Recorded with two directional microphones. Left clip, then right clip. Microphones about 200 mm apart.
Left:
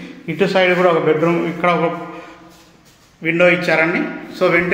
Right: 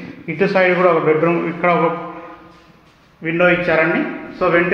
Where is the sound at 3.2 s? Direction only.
25° left (ahead or behind).